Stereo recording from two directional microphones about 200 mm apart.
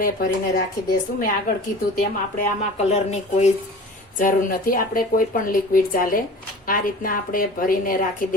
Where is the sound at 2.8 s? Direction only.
35° left (ahead or behind).